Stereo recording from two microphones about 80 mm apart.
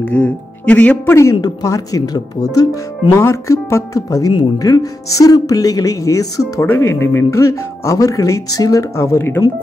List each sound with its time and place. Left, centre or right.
0.0 s speech: centre
1.3 s speech: left
3.2 s speech: left
7.0 s speech: left